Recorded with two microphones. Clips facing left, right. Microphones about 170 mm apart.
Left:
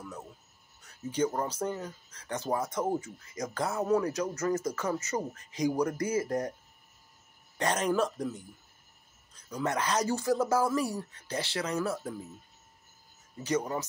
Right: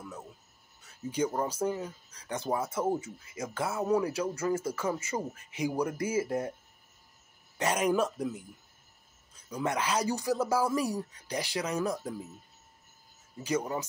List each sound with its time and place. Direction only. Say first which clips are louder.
1.1 s speech: left 1 dB; 10° right (ahead or behind)
7.5 s speech: right 1 dB; 10° right (ahead or behind)
13.4 s speech: left 1 dB; 10° right (ahead or behind)